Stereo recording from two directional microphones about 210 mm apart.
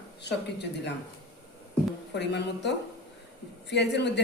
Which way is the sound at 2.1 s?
55° left (ahead or behind).